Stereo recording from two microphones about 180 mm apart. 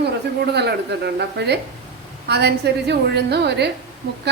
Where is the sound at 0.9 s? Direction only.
65° right (ahead or behind).